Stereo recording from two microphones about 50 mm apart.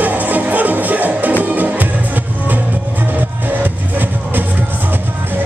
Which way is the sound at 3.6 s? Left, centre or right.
Right.